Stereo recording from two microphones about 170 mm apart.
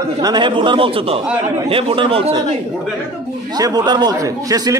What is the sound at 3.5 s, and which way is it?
A man's voice, 25° right (ahead or behind).